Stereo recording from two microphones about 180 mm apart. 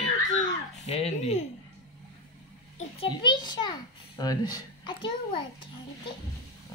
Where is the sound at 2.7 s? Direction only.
30° left (ahead or behind).